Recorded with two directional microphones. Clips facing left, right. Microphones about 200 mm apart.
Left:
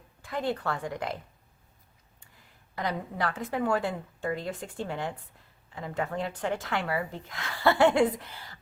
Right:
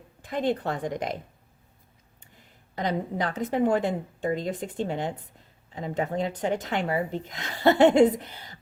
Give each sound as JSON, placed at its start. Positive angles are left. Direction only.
{"t": 0.2, "sound": "speech", "side_deg": -20}
{"t": 2.7, "sound": "speech", "side_deg": -20}